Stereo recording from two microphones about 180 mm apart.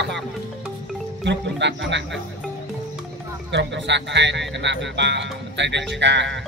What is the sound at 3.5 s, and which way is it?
A man's voice, 75° right (ahead or behind).